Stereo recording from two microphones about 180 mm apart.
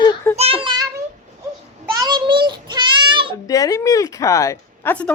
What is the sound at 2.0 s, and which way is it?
Child singing, 25° right (ahead or behind).